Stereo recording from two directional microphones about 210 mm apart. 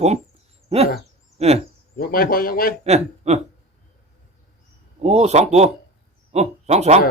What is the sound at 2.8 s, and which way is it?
Speech, 30° right (ahead or behind).